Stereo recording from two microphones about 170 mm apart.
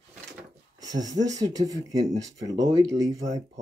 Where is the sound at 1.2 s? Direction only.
20° right (ahead or behind).